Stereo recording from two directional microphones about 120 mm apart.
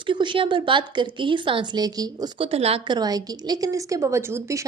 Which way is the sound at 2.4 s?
55° right (ahead or behind).